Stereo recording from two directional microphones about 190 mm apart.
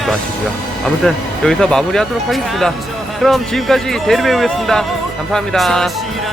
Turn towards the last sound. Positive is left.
turn(degrees=0)  # may be behind; listen again after turning